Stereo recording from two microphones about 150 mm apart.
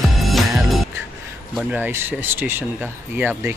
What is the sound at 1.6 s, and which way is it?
Speech, 10° right (ahead or behind).